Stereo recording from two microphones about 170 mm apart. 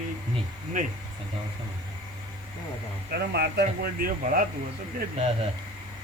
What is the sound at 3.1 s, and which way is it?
Speech, 70° right (ahead or behind).